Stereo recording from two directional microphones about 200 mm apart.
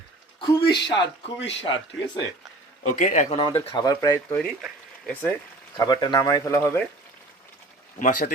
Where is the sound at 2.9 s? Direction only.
40° left (ahead or behind).